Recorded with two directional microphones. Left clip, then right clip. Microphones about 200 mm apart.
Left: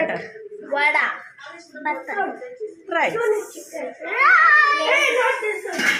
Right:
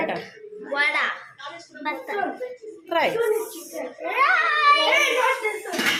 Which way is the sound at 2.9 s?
20° right (ahead or behind).